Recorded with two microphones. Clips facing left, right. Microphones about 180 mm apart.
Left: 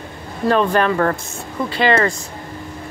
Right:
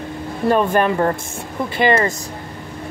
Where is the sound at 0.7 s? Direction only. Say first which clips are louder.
Even; 20° right (ahead or behind).